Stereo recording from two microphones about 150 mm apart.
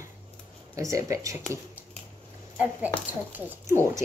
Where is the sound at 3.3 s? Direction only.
15° right (ahead or behind).